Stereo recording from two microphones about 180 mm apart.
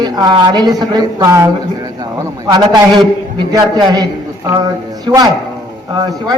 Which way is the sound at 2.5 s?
25° right (ahead or behind).